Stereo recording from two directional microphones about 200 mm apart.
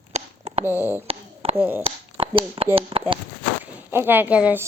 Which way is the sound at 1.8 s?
25° right (ahead or behind).